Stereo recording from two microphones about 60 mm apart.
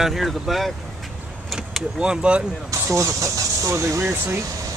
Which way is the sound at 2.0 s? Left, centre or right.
Centre.